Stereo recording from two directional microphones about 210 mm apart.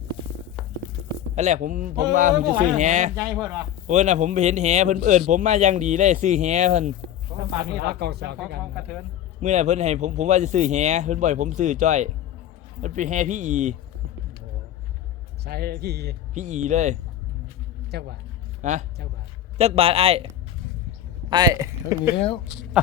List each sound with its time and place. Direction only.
0.6 s a sound: centre (ahead or behind)
1.4 s a man's voice: 35° right (ahead or behind)
7.6 s speech: 50° right (ahead or behind)
9.4 s a man's voice: 35° right (ahead or behind)
15.4 s speech: 50° right (ahead or behind)
16.3 s a man's voice: 35° right (ahead or behind)
17.9 s speech: 50° right (ahead or behind)
18.6 s a man's voice: 35° right (ahead or behind)
21.2 s speech: 20° right (ahead or behind)
22.4 s speech: centre (ahead or behind)